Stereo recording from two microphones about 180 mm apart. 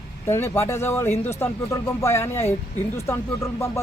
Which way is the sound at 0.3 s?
15° left (ahead or behind).